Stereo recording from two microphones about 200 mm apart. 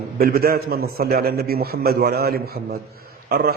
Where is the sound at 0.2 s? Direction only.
50° right (ahead or behind).